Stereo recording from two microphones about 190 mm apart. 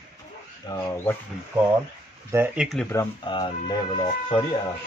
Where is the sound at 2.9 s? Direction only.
20° left (ahead or behind).